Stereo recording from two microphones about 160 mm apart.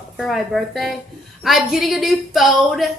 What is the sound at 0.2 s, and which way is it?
A woman's voice, centre (ahead or behind).